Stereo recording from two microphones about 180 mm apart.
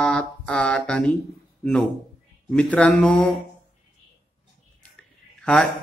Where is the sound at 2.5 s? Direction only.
5° left (ahead or behind).